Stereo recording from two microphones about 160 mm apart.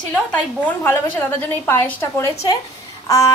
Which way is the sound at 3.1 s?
20° left (ahead or behind).